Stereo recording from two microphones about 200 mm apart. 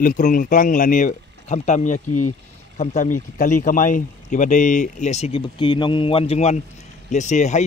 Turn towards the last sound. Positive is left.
turn(degrees=35)  # may be behind; listen again after turning